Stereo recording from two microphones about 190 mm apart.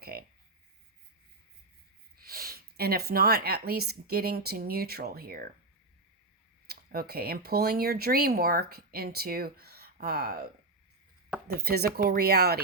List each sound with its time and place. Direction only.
0.0 s a sound: 55° right (ahead or behind)
2.2 s speech: 50° right (ahead or behind)
6.7 s speech: 55° right (ahead or behind)